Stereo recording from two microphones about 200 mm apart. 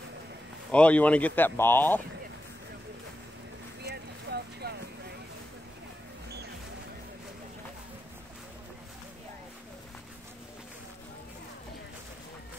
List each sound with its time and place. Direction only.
0.7 s speech: 5° left (ahead or behind)
3.9 s boat: 55° right (ahead or behind)